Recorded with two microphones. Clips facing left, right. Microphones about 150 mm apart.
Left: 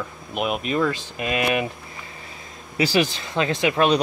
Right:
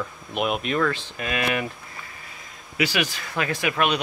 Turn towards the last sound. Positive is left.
turn(degrees=30)  # may be behind; listen again after turning